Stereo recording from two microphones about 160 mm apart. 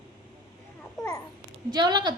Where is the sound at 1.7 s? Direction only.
25° right (ahead or behind).